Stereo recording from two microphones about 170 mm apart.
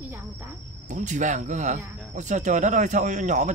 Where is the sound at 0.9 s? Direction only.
45° right (ahead or behind).